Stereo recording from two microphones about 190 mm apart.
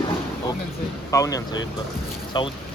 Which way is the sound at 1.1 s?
15° left (ahead or behind).